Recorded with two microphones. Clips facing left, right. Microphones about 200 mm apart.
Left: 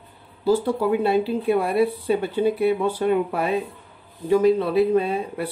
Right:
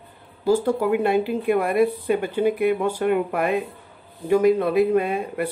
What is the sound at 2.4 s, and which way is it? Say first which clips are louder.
Speech: even; 15° right (ahead or behind).